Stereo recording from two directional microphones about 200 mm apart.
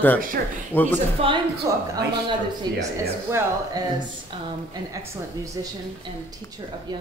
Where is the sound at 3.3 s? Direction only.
20° right (ahead or behind).